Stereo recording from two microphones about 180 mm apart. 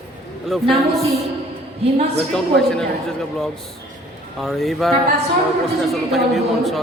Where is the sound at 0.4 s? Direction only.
Centre (ahead or behind).